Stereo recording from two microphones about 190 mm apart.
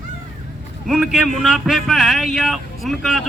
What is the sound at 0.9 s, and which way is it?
Speech, centre (ahead or behind).